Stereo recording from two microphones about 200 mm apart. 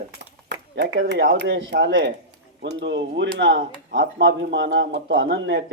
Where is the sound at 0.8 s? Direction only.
60° right (ahead or behind).